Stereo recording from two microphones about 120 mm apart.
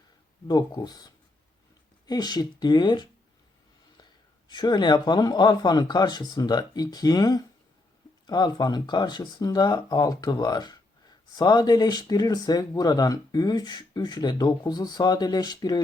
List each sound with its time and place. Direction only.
0.4 s speech: 35° left (ahead or behind)
4.4 s speech: 35° left (ahead or behind)